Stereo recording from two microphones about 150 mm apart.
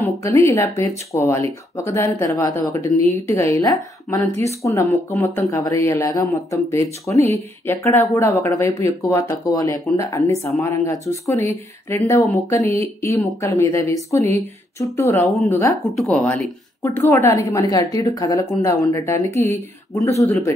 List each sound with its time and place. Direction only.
0.2 s speech: 20° left (ahead or behind)
16.0 s speech: 10° left (ahead or behind)